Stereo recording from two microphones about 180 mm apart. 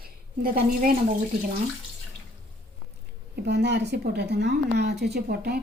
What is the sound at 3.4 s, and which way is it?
A woman's voice, 70° right (ahead or behind).